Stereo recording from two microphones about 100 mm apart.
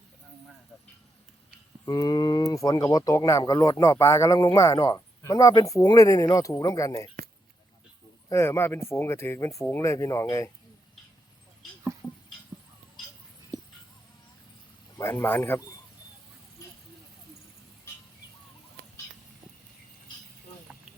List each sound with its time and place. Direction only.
1.8 s speech: 40° left (ahead or behind)
8.3 s speech: 25° left (ahead or behind)
12.0 s a sound: 5° left (ahead or behind)
14.9 s speech: 25° left (ahead or behind)